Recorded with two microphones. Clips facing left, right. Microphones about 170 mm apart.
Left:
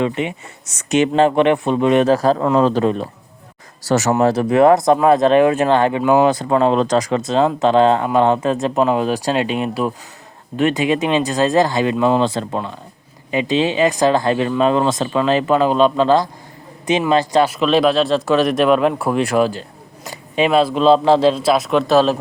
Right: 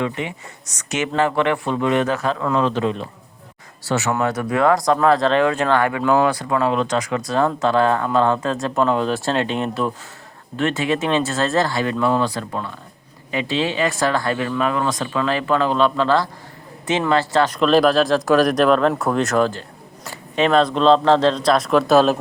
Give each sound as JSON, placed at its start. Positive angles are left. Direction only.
{"t": 0.0, "sound": "speech", "side_deg": 20}
{"t": 2.0, "sound": "a man's voice", "side_deg": 35}
{"t": 4.1, "sound": "speech", "side_deg": 30}
{"t": 7.2, "sound": "speech", "side_deg": 20}